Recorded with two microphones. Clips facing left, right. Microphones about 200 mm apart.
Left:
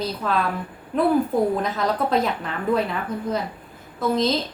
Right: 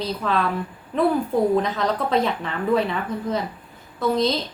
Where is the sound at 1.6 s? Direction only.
Centre (ahead or behind).